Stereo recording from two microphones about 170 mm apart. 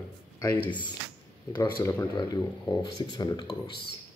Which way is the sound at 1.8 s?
20° left (ahead or behind).